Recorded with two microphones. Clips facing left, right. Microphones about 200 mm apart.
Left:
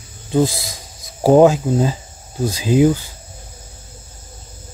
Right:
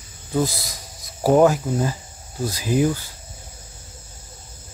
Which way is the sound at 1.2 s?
25° left (ahead or behind).